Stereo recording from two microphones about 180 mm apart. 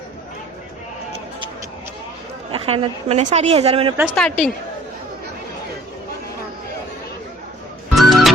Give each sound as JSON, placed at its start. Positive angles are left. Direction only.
{"t": 2.5, "sound": "a woman's voice", "side_deg": -30}
{"t": 4.1, "sound": "a woman's voice", "side_deg": 5}
{"t": 7.9, "sound": "music", "side_deg": 0}